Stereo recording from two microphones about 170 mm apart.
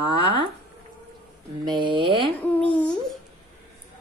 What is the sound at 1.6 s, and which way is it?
Speech, 25° right (ahead or behind).